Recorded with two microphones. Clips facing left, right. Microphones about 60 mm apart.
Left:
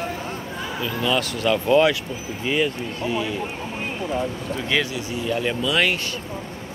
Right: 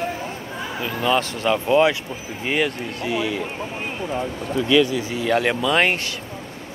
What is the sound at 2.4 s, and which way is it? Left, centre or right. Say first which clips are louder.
Speech: even; right.